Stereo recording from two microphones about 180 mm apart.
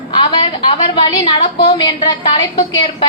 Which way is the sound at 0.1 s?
25° left (ahead or behind).